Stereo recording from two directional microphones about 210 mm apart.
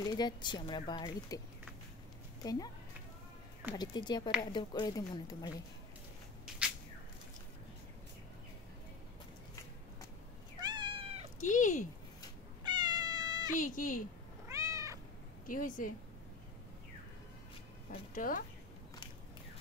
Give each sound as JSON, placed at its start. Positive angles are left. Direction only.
{"t": 0.0, "sound": "speech", "side_deg": 20}
{"t": 2.4, "sound": "speech", "side_deg": 20}
{"t": 3.7, "sound": "speech", "side_deg": 20}
{"t": 10.6, "sound": "cat", "side_deg": -20}
{"t": 11.4, "sound": "speech", "side_deg": 35}
{"t": 12.6, "sound": "cat", "side_deg": -20}
{"t": 13.6, "sound": "speech", "side_deg": 40}
{"t": 14.5, "sound": "cat", "side_deg": -15}
{"t": 15.4, "sound": "speech", "side_deg": 40}
{"t": 18.1, "sound": "speech", "side_deg": 40}